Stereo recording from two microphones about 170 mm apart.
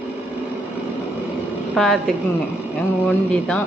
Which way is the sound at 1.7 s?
Centre (ahead or behind).